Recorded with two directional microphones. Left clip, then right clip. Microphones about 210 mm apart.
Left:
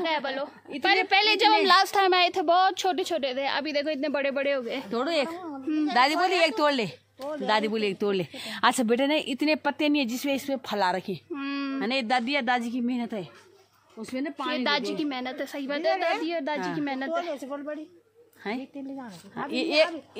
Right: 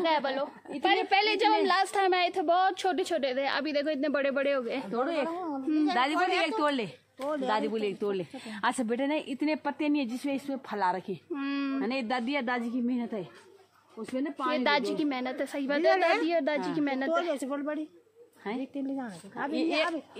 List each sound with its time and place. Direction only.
0.0 s a woman's voice: centre (ahead or behind)
0.8 s a woman's voice: 20° left (ahead or behind)
4.9 s a woman's voice: 55° left (ahead or behind)
11.3 s a sound: 10° left (ahead or behind)
11.8 s speech: 45° left (ahead or behind)
14.5 s a woman's voice: 10° left (ahead or behind)
17.3 s speech: 40° right (ahead or behind)
18.4 s a woman's voice: 55° left (ahead or behind)